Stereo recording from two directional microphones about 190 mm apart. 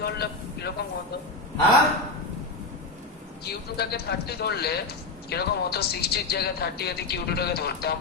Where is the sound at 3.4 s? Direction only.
55° left (ahead or behind).